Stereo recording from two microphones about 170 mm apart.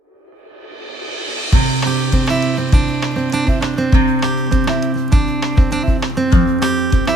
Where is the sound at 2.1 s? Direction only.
Centre (ahead or behind).